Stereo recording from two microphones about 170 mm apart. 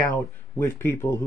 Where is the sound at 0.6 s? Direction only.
15° left (ahead or behind).